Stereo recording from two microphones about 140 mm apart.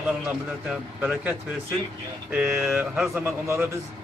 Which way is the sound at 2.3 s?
10° right (ahead or behind).